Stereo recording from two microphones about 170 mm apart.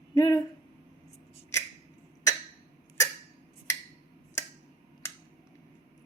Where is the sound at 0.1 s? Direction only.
20° left (ahead or behind).